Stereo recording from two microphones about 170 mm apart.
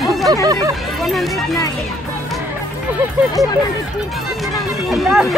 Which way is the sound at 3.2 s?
10° right (ahead or behind).